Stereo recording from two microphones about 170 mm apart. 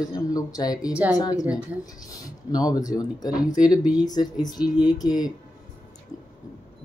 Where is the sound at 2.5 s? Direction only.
20° left (ahead or behind).